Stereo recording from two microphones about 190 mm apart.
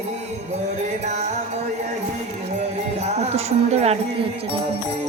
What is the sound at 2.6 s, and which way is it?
Music, 35° right (ahead or behind).